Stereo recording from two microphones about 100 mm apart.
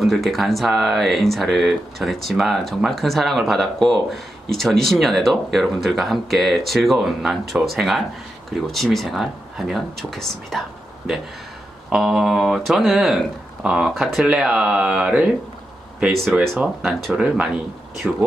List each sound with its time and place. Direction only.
0.0 s speech: centre (ahead or behind)
11.9 s speech: 5° right (ahead or behind)
18.0 s speech: 5° left (ahead or behind)